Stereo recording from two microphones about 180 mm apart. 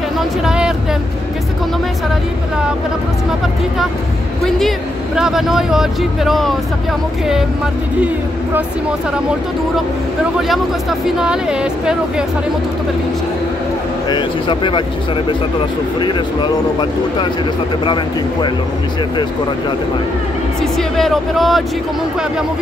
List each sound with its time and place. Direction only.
0.2 s a sound: 5° right (ahead or behind)
4.6 s speech: centre (ahead or behind)
10.5 s speech: centre (ahead or behind)
14.0 s speech: 25° left (ahead or behind)
16.0 s speech: 25° left (ahead or behind)
20.7 s speech: centre (ahead or behind)